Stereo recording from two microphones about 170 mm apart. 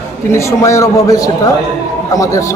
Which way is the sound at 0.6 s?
15° left (ahead or behind).